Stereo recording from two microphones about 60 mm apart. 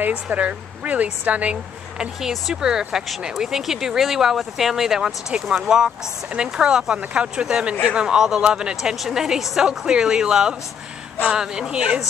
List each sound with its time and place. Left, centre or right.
0.0 s a woman's voice: right
2.2 s speech: centre